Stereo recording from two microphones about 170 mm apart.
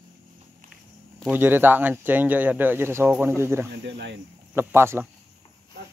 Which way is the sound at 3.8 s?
90° right.